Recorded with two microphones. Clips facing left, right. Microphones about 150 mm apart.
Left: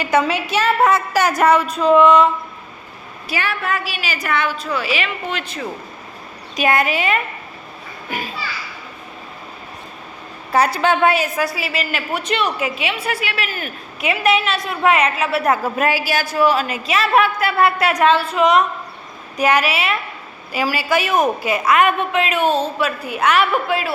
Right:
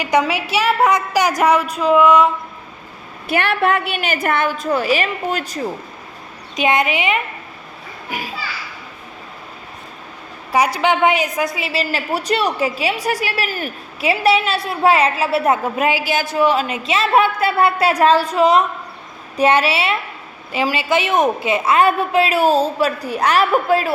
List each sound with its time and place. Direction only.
0.0 s a woman's voice: 15° right (ahead or behind)
3.2 s a woman's voice: 60° right (ahead or behind); by 5.6 s 40° right (ahead or behind)
6.6 s a woman's voice: 20° right (ahead or behind)
10.5 s a woman's voice: 15° right (ahead or behind); by 23.9 s 40° right (ahead or behind)